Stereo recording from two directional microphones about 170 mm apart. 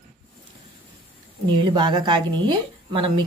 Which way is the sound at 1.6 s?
25° right (ahead or behind).